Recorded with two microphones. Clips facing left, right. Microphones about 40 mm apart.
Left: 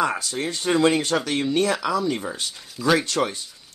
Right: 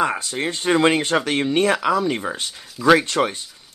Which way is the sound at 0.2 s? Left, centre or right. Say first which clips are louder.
Right 2 dB; right.